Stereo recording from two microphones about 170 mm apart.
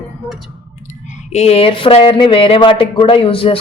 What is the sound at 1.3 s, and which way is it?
Speech, 40° left (ahead or behind).